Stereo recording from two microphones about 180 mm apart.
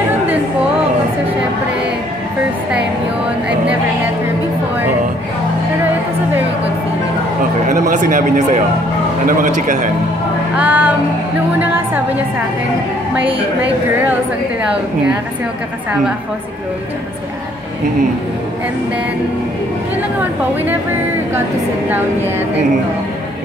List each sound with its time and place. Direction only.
3.4 s speech: 5° right (ahead or behind)
7.9 s speech: 45° right (ahead or behind)
10.6 s music: 10° right (ahead or behind)